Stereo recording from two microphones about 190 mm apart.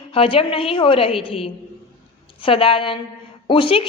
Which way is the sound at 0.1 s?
30° left (ahead or behind).